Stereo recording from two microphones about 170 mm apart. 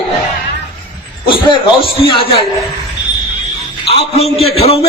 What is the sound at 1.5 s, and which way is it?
Speech, 30° left (ahead or behind).